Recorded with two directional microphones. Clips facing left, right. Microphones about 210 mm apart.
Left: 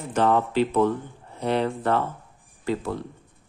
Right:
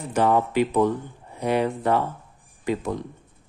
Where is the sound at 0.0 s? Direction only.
10° right (ahead or behind).